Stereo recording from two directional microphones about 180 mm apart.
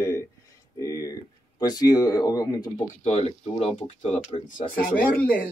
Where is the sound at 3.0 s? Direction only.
35° left (ahead or behind).